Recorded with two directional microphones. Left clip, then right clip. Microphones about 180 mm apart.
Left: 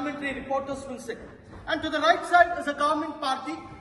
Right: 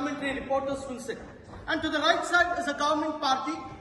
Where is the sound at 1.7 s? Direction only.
60° left (ahead or behind).